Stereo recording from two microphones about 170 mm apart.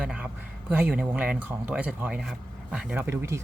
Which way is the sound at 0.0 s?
5° right (ahead or behind).